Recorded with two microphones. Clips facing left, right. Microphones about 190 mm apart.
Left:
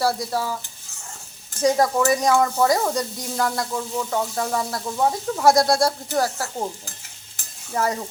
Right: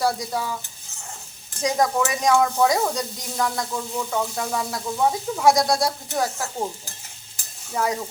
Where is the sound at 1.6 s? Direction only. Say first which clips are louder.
Left 3 dB; centre (ahead or behind).